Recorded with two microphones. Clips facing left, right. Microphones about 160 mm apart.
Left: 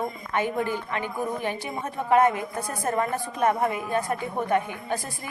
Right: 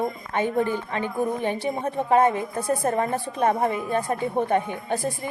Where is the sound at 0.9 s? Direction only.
25° right (ahead or behind).